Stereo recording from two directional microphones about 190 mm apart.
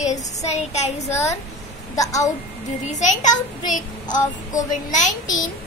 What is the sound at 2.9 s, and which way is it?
A child's voice, 40° left (ahead or behind).